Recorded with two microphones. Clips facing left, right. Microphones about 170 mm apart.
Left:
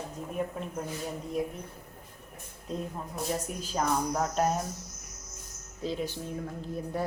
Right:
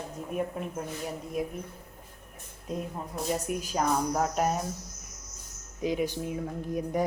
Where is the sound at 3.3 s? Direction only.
10° right (ahead or behind).